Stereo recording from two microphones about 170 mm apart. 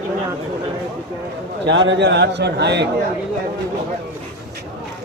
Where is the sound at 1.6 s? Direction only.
90° right.